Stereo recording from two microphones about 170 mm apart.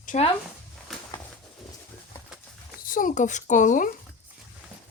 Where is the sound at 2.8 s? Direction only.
50° left (ahead or behind).